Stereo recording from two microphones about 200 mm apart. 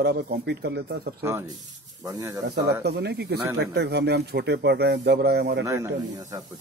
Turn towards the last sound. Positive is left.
turn(degrees=-15)  # may be behind; listen again after turning